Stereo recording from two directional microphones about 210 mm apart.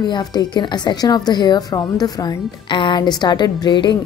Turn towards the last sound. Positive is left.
turn(degrees=20)  # may be behind; listen again after turning